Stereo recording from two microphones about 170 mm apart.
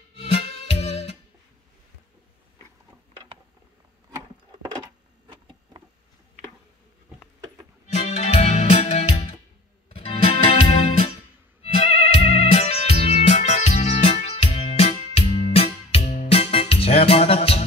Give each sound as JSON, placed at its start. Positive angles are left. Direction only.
{"t": 0.3, "sound": "music", "side_deg": 40}
{"t": 5.3, "sound": "a sound", "side_deg": -25}
{"t": 8.1, "sound": "music", "side_deg": 40}